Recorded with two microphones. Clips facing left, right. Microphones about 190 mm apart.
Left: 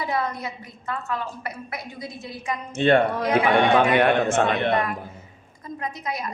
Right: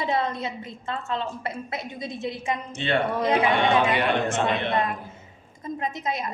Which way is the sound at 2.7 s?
50° left (ahead or behind).